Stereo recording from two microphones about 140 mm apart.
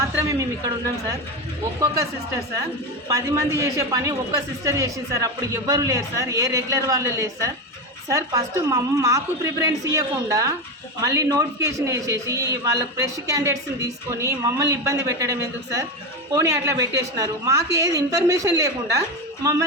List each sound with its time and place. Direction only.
0.0 s a man's voice: 25° right (ahead or behind)
3.1 s a man's voice: 20° right (ahead or behind)